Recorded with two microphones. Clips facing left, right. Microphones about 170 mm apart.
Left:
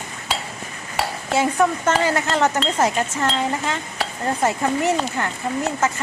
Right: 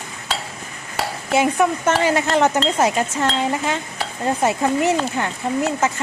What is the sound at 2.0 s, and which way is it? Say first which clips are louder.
Stir: right 3 dB; 20° right (ahead or behind).